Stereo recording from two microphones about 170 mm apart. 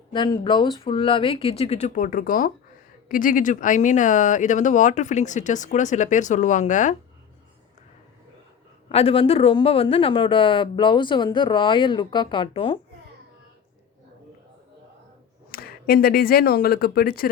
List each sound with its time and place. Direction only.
0.1 s speech: 25° left (ahead or behind); by 6.9 s 45° left (ahead or behind)
8.9 s speech: 35° left (ahead or behind)
15.5 s speech: 60° left (ahead or behind)